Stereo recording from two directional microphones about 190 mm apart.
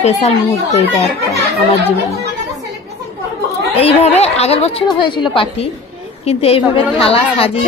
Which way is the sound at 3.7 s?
35° left (ahead or behind).